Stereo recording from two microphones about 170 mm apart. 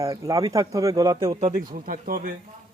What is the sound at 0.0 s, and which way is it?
A man's voice, 20° right (ahead or behind).